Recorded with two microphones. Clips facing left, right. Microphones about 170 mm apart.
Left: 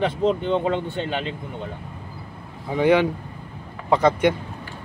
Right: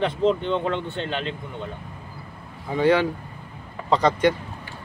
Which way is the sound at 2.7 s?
15° left (ahead or behind).